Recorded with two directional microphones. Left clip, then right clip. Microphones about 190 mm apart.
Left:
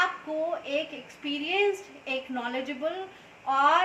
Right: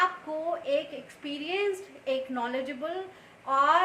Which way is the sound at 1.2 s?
15° right (ahead or behind).